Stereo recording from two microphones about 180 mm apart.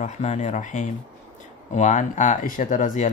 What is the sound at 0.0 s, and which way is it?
Speech, 40° left (ahead or behind).